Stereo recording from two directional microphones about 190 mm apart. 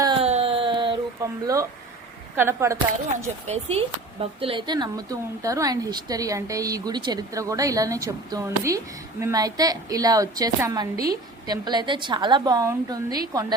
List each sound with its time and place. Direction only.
0.0 s a sound: 30° right (ahead or behind)
2.3 s speech: 10° right (ahead or behind)
3.4 s speech: 35° right (ahead or behind); by 13.5 s 20° right (ahead or behind)